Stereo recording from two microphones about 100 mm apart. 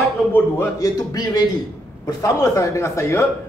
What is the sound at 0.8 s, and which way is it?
A man's voice, 40° left (ahead or behind).